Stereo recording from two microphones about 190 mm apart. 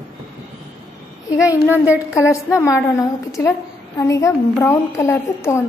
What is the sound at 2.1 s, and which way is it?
A woman's voice, 15° left (ahead or behind).